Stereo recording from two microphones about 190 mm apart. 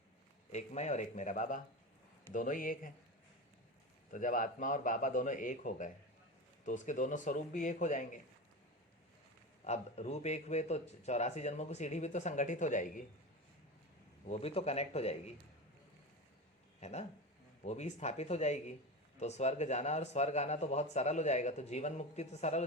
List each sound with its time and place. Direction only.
0.5 s a man's voice: 35° left (ahead or behind)
4.1 s a man's voice: 45° left (ahead or behind)
9.6 s speech: 35° left (ahead or behind)
14.3 s speech: 35° left (ahead or behind)
16.8 s speech: 35° left (ahead or behind)